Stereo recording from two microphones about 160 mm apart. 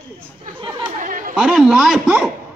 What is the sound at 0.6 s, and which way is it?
Chatter, 30° right (ahead or behind).